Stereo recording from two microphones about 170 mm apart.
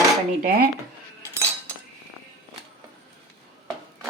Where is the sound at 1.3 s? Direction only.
15° left (ahead or behind).